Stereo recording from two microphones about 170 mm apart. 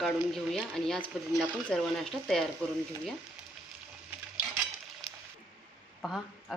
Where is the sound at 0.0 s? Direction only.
Centre (ahead or behind).